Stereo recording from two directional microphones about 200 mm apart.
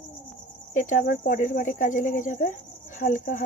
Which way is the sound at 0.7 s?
40° left (ahead or behind).